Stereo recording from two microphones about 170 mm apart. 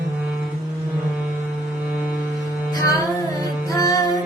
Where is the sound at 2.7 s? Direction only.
20° left (ahead or behind).